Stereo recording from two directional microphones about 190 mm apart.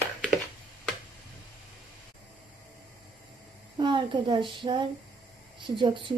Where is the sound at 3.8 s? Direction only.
25° right (ahead or behind).